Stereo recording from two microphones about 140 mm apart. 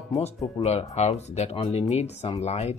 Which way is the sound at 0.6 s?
50° left (ahead or behind).